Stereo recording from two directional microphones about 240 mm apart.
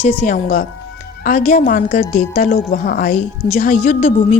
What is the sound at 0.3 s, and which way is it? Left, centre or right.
A woman's voice, left.